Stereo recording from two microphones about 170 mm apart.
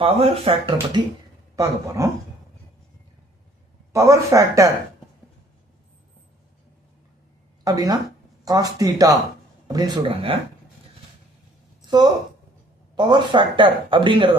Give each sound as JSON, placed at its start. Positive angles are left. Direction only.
{"t": 0.0, "sound": "speech", "side_deg": -35}
{"t": 1.5, "sound": "speech", "side_deg": -20}
{"t": 3.9, "sound": "speech", "side_deg": -20}
{"t": 7.6, "sound": "speech", "side_deg": -20}
{"t": 13.0, "sound": "speech", "side_deg": -25}